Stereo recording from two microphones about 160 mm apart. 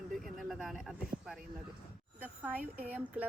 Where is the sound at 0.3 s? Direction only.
Centre (ahead or behind).